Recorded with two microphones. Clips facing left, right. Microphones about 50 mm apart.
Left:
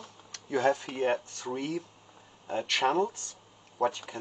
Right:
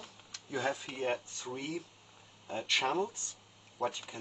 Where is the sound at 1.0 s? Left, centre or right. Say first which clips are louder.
Left 6 dB; left.